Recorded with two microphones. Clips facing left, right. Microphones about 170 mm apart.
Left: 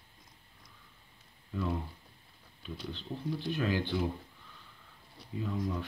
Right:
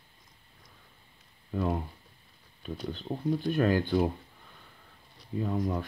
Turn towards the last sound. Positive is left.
turn(degrees=-50)  # may be behind; listen again after turning